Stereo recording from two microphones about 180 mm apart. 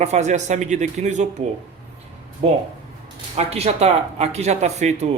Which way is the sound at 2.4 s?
35° right (ahead or behind).